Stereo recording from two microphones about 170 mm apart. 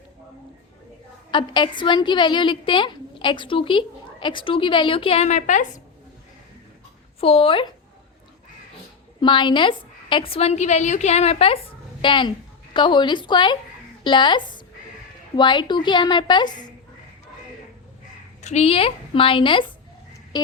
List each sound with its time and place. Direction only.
1.3 s a woman's voice: 30° left (ahead or behind); by 5.8 s 45° left (ahead or behind)
7.2 s a woman's voice: 35° left (ahead or behind)
9.2 s a woman's voice: 30° left (ahead or behind)
18.4 s a woman's voice: 40° left (ahead or behind)